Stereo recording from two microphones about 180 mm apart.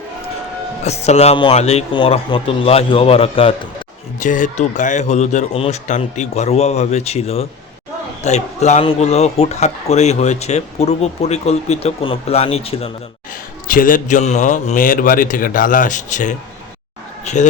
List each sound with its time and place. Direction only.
0.9 s speech: 35° left (ahead or behind)
4.2 s speech: 45° left (ahead or behind)
13.7 s a man's voice: 50° left (ahead or behind)